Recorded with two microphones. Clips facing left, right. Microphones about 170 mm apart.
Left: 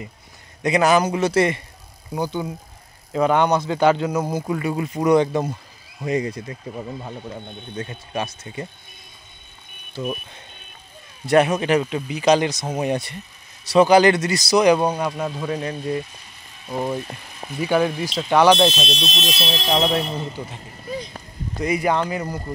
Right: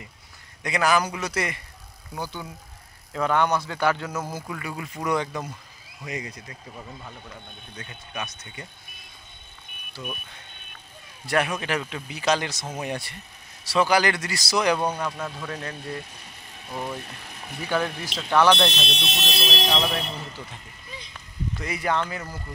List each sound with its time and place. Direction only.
0.6 s speech: 20° left (ahead or behind)
4.5 s speech: 30° left (ahead or behind)
10.0 s speech: 20° left (ahead or behind)
11.2 s speech: 20° left (ahead or behind)
17.6 s speech: 15° left (ahead or behind)
18.7 s speech: 60° right (ahead or behind)
19.4 s speech: 30° left (ahead or behind)
20.8 s a sound: 40° left (ahead or behind)
21.6 s speech: 15° left (ahead or behind)